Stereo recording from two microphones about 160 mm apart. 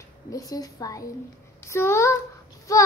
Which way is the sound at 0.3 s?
25° left (ahead or behind).